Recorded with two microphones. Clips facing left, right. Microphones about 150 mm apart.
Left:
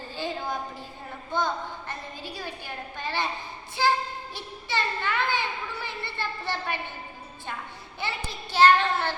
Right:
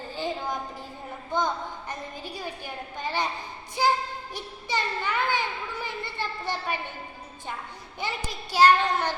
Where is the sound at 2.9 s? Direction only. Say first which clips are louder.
Right 1 dB; 15° right (ahead or behind).